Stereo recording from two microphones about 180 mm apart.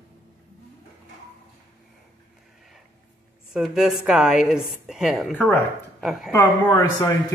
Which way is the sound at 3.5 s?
Centre (ahead or behind).